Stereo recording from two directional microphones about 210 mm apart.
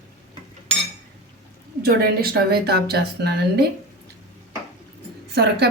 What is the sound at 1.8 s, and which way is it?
Speech, 45° right (ahead or behind).